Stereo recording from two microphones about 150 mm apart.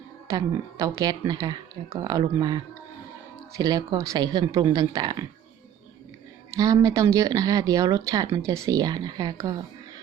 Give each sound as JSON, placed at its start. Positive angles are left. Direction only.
{"t": 0.3, "sound": "speech", "side_deg": -20}
{"t": 6.6, "sound": "speech", "side_deg": -25}